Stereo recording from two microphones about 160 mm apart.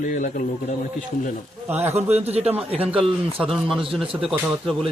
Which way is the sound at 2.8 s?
5° right (ahead or behind).